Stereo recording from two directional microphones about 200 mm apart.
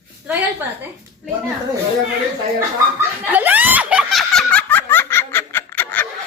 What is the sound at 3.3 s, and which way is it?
Snicker, 10° right (ahead or behind).